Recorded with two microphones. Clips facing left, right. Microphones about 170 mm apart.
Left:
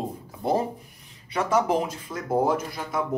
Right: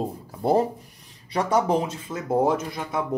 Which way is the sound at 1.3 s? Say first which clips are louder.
Right 1 dB; 35° right (ahead or behind).